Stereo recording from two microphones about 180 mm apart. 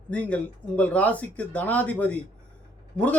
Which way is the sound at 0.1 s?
10° left (ahead or behind).